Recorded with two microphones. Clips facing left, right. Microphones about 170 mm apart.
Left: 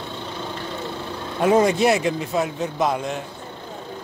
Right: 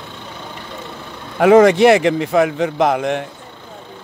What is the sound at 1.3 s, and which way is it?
Speech, 75° right (ahead or behind).